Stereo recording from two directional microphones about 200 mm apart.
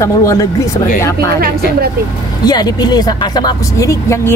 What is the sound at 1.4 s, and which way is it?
Speech, 50° right (ahead or behind).